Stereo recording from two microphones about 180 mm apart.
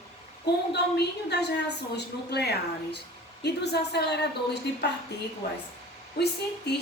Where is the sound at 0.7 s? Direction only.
65° left (ahead or behind).